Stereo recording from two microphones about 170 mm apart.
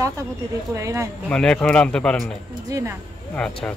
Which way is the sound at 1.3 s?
5° left (ahead or behind).